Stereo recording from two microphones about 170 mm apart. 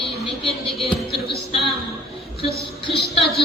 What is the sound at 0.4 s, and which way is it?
Speech, 30° left (ahead or behind).